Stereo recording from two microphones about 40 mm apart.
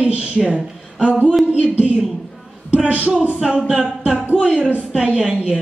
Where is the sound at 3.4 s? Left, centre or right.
Centre.